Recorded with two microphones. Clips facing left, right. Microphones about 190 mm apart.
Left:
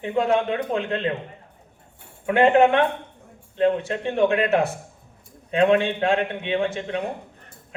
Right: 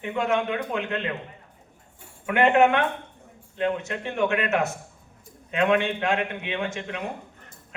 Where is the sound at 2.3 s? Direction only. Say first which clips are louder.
Left 3 dB; 30° left (ahead or behind).